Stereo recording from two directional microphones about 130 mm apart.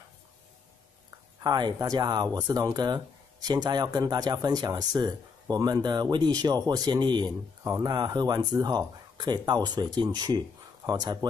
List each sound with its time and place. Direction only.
1.4 s speech: 30° right (ahead or behind)